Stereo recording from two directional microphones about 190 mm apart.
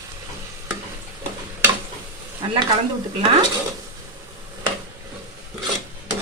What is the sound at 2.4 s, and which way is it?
Sizzle, 25° right (ahead or behind).